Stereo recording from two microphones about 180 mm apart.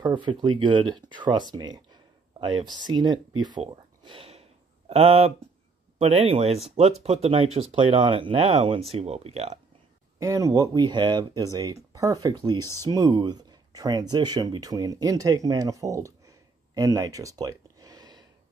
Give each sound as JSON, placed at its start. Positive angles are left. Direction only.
{"t": 0.0, "sound": "speech", "side_deg": -25}
{"t": 10.1, "sound": "speech", "side_deg": -15}